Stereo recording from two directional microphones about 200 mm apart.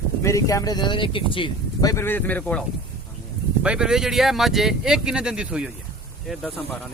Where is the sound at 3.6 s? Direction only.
5° right (ahead or behind).